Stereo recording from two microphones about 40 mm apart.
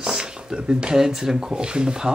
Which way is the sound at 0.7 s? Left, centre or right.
Right.